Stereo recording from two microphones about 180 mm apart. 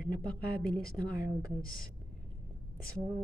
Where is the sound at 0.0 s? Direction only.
50° left (ahead or behind).